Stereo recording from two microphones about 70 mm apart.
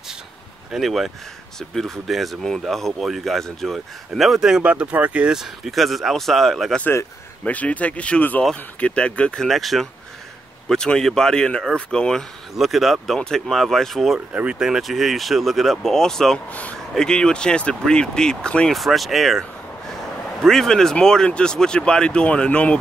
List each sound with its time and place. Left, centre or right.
0.7 s speech: centre
5.3 s speech: centre
7.4 s speech: left
9.5 s speech: centre
12.5 s speech: centre
14.3 s speech: centre
16.4 s speech: left
16.7 s speech: centre
18.7 s speech: centre